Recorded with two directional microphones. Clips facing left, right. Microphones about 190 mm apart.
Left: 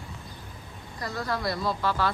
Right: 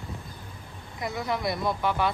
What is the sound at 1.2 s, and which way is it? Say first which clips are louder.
Speech: right 1 dB; 20° right (ahead or behind).